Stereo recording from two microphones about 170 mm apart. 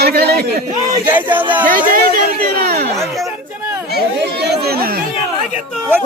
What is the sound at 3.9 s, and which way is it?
Chatter, 70° right (ahead or behind).